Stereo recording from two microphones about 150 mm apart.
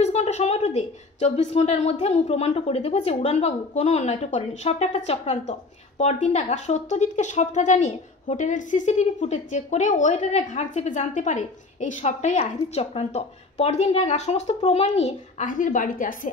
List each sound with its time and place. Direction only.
0.0 s a woman's voice: 50° left (ahead or behind); by 16.2 s 65° left (ahead or behind)